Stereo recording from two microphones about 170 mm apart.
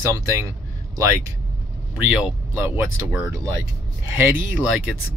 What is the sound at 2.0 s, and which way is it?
Speech, 10° right (ahead or behind).